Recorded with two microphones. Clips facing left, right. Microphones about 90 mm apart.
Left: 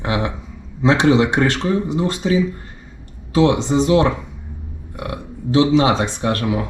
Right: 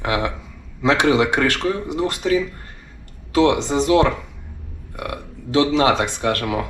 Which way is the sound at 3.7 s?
10° left (ahead or behind).